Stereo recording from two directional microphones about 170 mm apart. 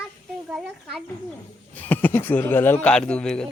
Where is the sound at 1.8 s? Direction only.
10° left (ahead or behind).